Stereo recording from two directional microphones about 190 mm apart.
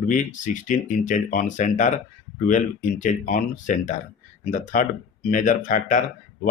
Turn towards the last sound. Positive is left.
turn(degrees=45)  # may be behind; listen again after turning